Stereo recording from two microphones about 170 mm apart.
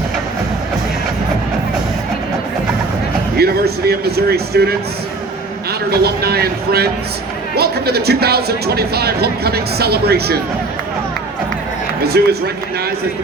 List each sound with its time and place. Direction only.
3.3 s speech: 70° right (ahead or behind)
5.9 s speech: 65° right (ahead or behind)
12.0 s speech: 70° right (ahead or behind)